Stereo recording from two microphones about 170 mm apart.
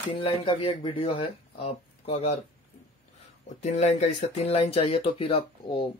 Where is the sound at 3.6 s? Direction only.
40° left (ahead or behind).